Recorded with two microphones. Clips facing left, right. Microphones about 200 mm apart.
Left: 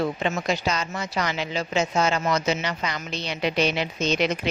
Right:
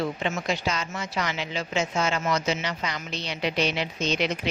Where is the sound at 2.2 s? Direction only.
55° left (ahead or behind).